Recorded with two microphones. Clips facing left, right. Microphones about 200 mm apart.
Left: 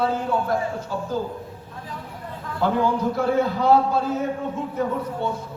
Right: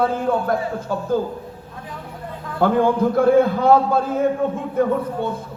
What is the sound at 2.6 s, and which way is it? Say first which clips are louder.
A man's voice: right 5 dB; 55° right (ahead or behind).